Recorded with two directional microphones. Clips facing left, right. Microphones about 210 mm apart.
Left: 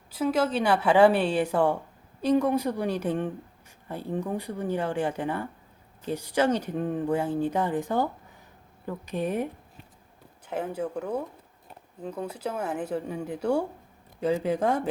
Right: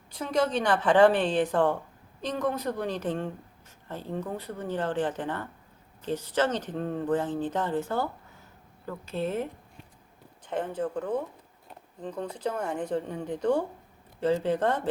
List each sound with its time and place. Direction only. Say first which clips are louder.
0.1 s speech: left 2 dB; 5° left (ahead or behind)